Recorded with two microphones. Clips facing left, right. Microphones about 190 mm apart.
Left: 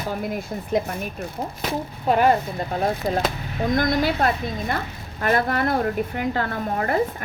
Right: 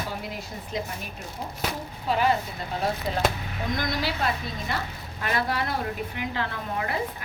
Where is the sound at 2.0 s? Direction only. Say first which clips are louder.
Left 6 dB; 50° left (ahead or behind).